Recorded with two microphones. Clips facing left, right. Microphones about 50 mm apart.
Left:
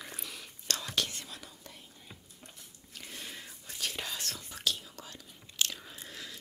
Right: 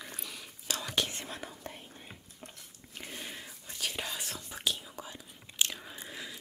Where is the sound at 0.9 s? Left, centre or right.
Right.